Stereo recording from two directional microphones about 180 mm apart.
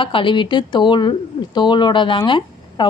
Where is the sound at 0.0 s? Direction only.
30° left (ahead or behind).